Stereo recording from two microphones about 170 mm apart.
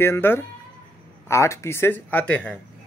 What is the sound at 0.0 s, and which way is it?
Speech, 15° left (ahead or behind).